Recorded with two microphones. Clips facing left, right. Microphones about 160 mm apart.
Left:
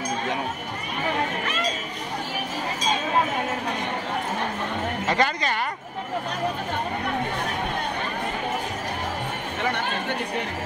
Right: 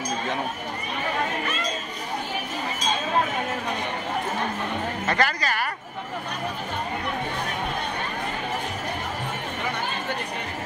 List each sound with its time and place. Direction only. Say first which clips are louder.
5.0 s a woman's voice: left 1 dB; 20° left (ahead or behind)